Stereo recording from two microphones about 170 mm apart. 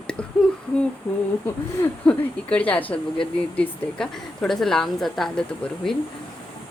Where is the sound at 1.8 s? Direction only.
5° left (ahead or behind).